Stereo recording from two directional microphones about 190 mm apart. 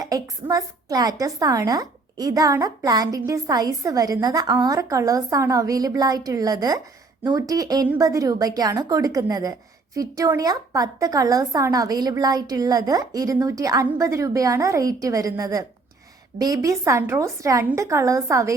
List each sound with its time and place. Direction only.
0.0 s a woman's voice: 20° right (ahead or behind)